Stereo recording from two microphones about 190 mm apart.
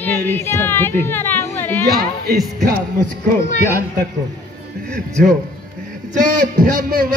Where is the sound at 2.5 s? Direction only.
55° right (ahead or behind).